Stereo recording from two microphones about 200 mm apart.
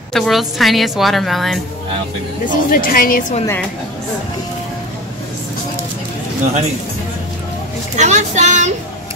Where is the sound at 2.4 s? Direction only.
45° left (ahead or behind).